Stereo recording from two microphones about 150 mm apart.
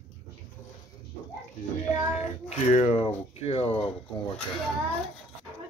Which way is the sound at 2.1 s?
45° left (ahead or behind).